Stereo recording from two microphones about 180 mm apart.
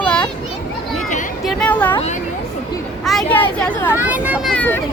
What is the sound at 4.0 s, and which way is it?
Speech, 10° right (ahead or behind).